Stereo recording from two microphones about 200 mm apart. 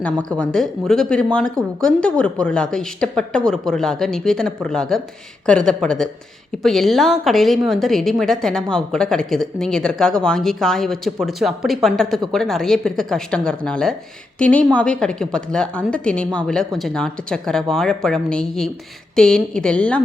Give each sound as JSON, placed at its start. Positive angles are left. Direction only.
{"t": 0.0, "sound": "a woman's voice", "side_deg": 5}